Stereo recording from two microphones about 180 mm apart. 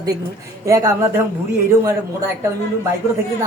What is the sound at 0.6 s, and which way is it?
Speech, 15° right (ahead or behind).